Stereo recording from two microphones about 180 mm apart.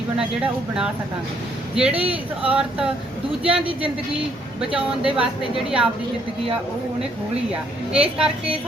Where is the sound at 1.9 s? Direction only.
30° right (ahead or behind).